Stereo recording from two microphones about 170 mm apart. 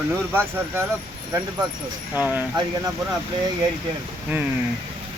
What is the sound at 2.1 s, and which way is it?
Speech, 10° right (ahead or behind).